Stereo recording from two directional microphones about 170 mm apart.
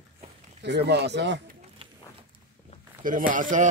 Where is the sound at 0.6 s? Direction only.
85° right.